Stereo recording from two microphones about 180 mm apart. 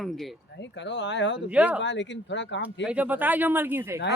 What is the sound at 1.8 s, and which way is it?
Speech, 85° left.